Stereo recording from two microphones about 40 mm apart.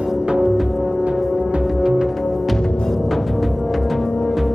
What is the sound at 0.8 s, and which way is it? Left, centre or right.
Music, right.